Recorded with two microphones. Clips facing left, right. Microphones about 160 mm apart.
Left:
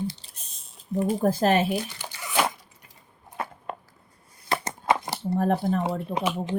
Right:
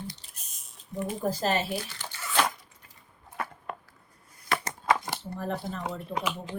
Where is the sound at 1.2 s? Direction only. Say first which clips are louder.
Left 5 dB; 55° left (ahead or behind).